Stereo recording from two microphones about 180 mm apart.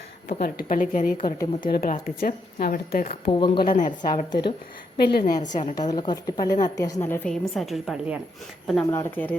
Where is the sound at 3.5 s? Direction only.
45° left (ahead or behind).